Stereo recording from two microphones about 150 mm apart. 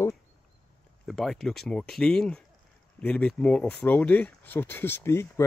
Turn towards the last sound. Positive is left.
turn(degrees=15)  # may be behind; listen again after turning